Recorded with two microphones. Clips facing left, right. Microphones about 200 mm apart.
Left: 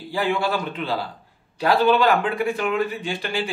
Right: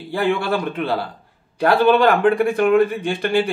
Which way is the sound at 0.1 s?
55° right (ahead or behind).